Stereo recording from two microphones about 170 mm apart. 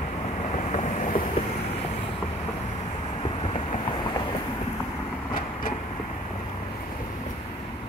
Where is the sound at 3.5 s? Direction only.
35° left (ahead or behind).